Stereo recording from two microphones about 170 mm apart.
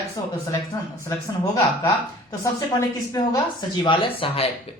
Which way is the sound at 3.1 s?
25° left (ahead or behind).